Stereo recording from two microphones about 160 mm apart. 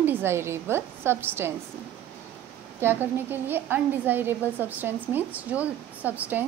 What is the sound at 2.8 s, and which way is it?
A woman's voice, 15° right (ahead or behind).